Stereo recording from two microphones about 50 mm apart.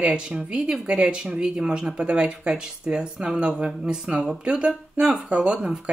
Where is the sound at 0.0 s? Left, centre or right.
Centre.